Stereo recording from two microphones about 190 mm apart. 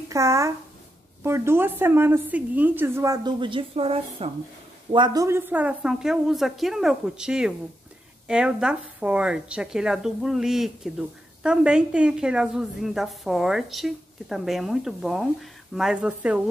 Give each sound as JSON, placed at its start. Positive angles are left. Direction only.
{"t": 0.1, "sound": "a woman's voice", "side_deg": -15}
{"t": 4.9, "sound": "speech", "side_deg": -20}